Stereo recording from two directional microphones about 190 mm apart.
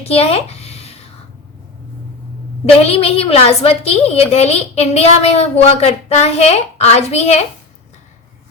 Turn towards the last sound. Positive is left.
turn(degrees=35)  # may be behind; listen again after turning